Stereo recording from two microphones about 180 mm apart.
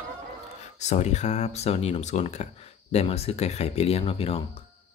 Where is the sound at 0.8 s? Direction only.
40° left (ahead or behind).